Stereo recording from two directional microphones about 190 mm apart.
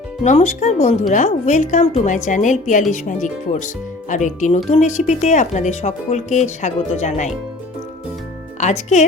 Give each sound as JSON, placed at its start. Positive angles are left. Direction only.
{"t": 0.2, "sound": "speech", "side_deg": 35}
{"t": 8.6, "sound": "speech", "side_deg": 40}